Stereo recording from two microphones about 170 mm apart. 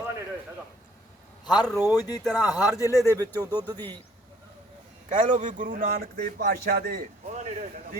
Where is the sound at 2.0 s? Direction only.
25° left (ahead or behind).